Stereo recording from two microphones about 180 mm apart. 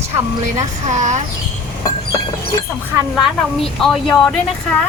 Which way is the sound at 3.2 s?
Centre (ahead or behind).